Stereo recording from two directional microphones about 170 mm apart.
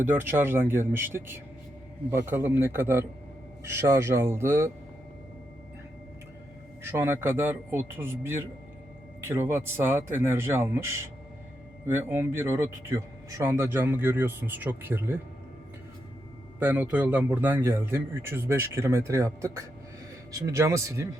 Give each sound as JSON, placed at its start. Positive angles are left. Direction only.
{"t": 0.0, "sound": "a man's voice", "side_deg": -10}
{"t": 6.9, "sound": "a man's voice", "side_deg": -15}
{"t": 9.3, "sound": "a man's voice", "side_deg": -15}
{"t": 11.9, "sound": "a man's voice", "side_deg": -15}
{"t": 16.6, "sound": "a man's voice", "side_deg": -10}